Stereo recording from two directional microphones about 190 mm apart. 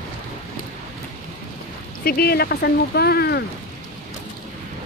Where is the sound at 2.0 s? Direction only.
50° left (ahead or behind).